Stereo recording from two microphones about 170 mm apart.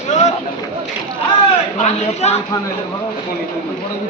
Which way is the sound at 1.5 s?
35° left (ahead or behind).